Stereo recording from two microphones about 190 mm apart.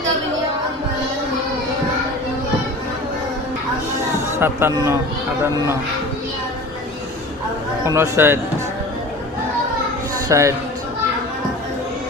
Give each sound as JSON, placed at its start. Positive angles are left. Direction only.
{"t": 4.4, "sound": "speech", "side_deg": -10}
{"t": 7.9, "sound": "speech", "side_deg": -15}
{"t": 10.2, "sound": "a man's voice", "side_deg": -15}